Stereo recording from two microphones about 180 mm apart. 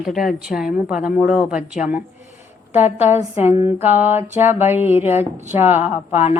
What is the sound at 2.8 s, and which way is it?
Speech, 35° left (ahead or behind).